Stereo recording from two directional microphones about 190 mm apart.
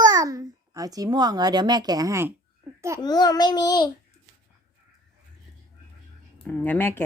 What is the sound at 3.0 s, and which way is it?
Speech, 20° left (ahead or behind).